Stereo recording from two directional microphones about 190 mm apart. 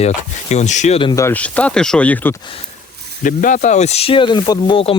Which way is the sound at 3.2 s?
40° left (ahead or behind).